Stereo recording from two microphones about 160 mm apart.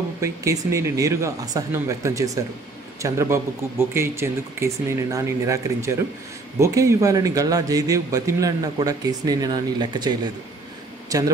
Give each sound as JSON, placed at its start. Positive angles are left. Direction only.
{"t": 0.2, "sound": "a man's voice", "side_deg": -20}